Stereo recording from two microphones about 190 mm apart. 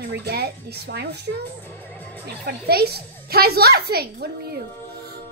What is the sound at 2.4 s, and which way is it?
A child's voice, 55° right (ahead or behind).